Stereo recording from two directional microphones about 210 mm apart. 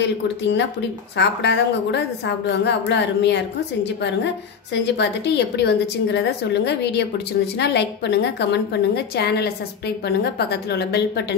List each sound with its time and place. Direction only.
0.0 s a woman's voice: 55° left (ahead or behind)